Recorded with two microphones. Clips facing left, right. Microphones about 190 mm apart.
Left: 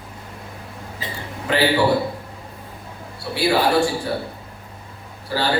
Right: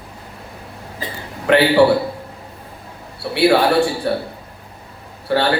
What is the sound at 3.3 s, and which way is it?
Speech, 65° right (ahead or behind).